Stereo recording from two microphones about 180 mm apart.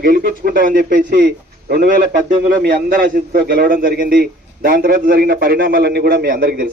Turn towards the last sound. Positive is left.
turn(degrees=-65)  # may be behind; listen again after turning